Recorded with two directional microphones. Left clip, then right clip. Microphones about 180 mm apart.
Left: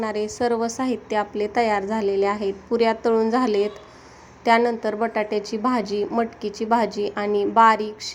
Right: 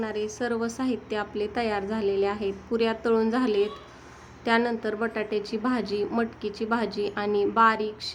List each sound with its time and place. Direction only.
0.0 s a woman's voice: 25° left (ahead or behind)